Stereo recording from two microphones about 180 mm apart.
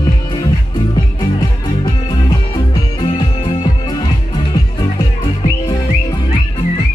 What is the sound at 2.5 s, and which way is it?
Music, 30° left (ahead or behind).